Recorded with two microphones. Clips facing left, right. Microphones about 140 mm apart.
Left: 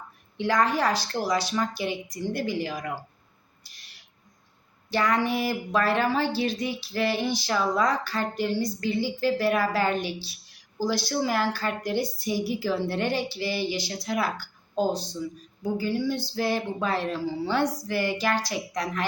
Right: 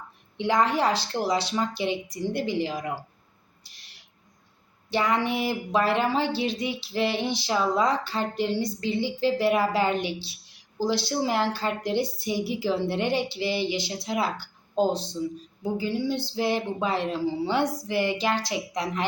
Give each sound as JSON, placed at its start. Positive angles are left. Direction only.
{"t": 0.3, "sound": "a woman's voice", "side_deg": -20}
{"t": 4.9, "sound": "a woman's voice", "side_deg": -25}